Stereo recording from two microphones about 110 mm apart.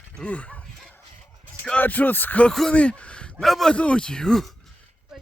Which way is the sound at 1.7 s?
15° left (ahead or behind).